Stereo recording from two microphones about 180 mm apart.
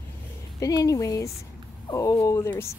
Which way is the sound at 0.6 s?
20° left (ahead or behind).